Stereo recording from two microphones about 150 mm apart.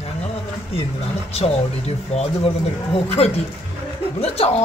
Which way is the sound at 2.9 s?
40° left (ahead or behind).